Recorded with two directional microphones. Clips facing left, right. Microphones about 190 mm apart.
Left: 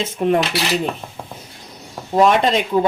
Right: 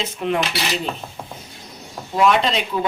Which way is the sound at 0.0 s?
45° left (ahead or behind).